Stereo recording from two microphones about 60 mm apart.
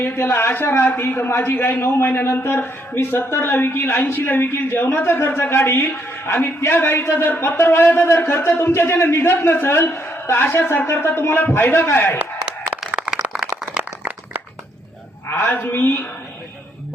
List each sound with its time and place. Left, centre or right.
0.0 s a man's voice: left
13.1 s a sound: centre
15.3 s a woman's voice: left